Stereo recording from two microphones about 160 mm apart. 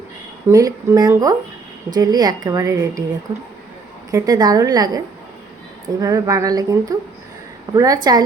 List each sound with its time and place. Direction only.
0.4 s a woman's voice: 20° right (ahead or behind)
4.1 s a woman's voice: 25° right (ahead or behind)